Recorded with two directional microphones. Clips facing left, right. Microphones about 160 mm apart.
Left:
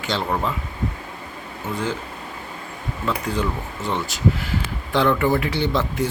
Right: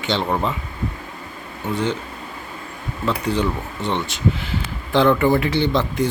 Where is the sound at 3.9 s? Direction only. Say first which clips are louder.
Right 2 dB; 25° right (ahead or behind).